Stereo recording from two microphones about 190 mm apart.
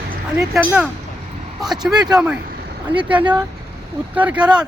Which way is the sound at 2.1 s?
5° right (ahead or behind).